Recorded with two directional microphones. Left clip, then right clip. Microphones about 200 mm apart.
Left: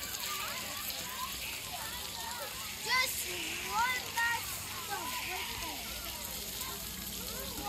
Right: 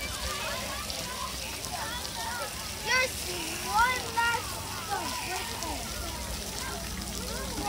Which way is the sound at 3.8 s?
35° right (ahead or behind).